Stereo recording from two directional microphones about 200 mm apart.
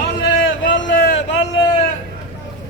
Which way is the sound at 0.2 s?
60° left (ahead or behind).